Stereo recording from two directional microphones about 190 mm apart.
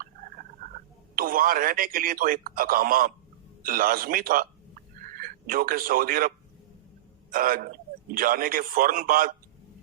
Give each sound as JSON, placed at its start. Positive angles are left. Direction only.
{"t": 1.1, "sound": "speech", "side_deg": -50}
{"t": 7.3, "sound": "speech", "side_deg": -50}